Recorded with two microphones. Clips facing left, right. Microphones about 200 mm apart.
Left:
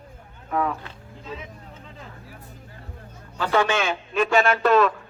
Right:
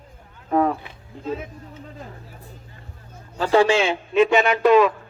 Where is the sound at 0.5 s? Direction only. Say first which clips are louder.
Right 6 dB; 35° right (ahead or behind).